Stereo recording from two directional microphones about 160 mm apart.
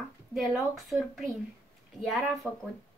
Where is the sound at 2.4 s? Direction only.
5° left (ahead or behind).